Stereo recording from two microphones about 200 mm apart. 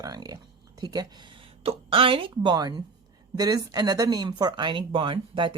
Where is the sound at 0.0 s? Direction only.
20° right (ahead or behind).